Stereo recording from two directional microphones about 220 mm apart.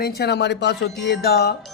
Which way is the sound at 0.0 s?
45° left (ahead or behind).